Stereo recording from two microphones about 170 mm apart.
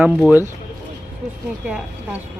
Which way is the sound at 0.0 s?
10° right (ahead or behind).